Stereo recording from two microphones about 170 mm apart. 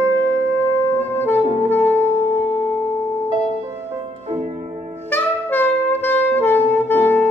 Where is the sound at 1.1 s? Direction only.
15° left (ahead or behind).